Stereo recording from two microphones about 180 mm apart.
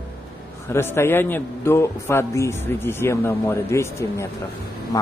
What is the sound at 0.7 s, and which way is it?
A man's voice, 15° left (ahead or behind).